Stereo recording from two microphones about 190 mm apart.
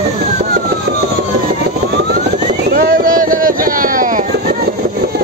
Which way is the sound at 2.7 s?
50° right (ahead or behind).